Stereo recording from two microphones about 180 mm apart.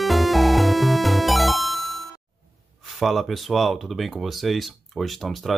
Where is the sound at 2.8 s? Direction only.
Centre (ahead or behind).